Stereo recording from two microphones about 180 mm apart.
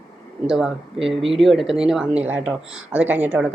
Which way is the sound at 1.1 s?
Centre (ahead or behind).